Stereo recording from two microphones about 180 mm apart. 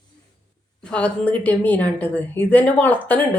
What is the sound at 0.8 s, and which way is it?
A woman's voice, 5° left (ahead or behind).